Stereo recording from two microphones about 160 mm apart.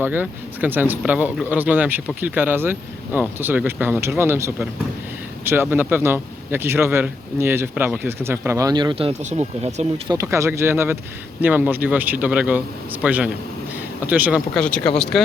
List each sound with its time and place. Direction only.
0.0 s a man's voice: 10° right (ahead or behind); by 9.8 s 40° right (ahead or behind)
10.1 s a man's voice: 20° right (ahead or behind)
14.5 s speech: 5° left (ahead or behind)